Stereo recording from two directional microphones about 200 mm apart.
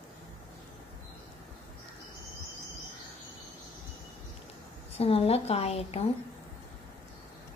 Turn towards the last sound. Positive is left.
turn(degrees=30)  # may be behind; listen again after turning